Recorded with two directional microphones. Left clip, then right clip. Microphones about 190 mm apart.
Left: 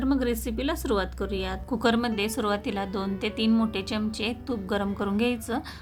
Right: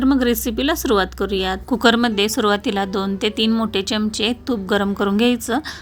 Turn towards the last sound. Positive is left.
turn(degrees=-20)  # may be behind; listen again after turning